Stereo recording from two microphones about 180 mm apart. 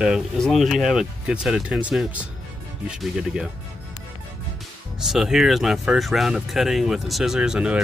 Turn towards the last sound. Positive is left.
turn(degrees=-5)  # may be behind; listen again after turning